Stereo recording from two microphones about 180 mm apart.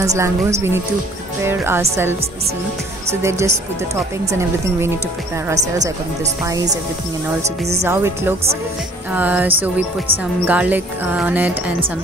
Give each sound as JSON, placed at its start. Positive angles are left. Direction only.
{"t": 0.0, "sound": "speech", "side_deg": -15}
{"t": 6.4, "sound": "speech", "side_deg": -20}
{"t": 7.8, "sound": "speech", "side_deg": -15}